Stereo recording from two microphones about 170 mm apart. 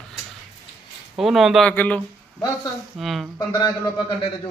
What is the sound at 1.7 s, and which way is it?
Speech, 10° left (ahead or behind).